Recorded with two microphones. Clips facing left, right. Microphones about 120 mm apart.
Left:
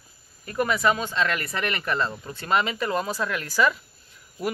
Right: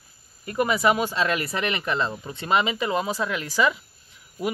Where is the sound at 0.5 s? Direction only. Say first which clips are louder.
Right 2 dB; 10° right (ahead or behind).